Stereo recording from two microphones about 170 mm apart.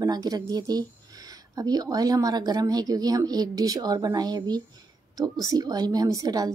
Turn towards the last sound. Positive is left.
turn(degrees=-20)  # may be behind; listen again after turning